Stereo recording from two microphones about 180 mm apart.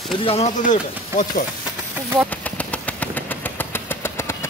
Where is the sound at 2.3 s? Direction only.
10° left (ahead or behind).